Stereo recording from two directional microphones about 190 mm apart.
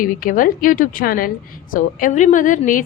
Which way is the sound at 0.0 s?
45° left (ahead or behind).